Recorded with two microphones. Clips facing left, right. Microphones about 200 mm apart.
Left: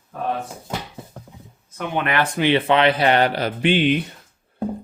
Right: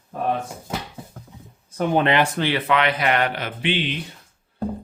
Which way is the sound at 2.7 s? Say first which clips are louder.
Left 2 dB; 30° left (ahead or behind).